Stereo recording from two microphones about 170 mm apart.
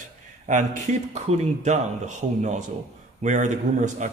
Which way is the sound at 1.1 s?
40° right (ahead or behind).